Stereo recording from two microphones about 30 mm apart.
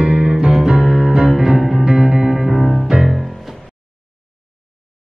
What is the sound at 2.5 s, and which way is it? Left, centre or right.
Music, centre.